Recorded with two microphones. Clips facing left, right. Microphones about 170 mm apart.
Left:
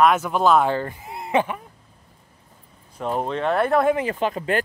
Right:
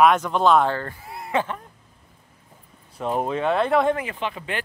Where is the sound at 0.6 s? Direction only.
15° left (ahead or behind).